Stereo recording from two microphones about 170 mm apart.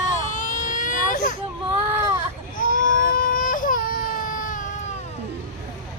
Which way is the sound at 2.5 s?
55° left (ahead or behind).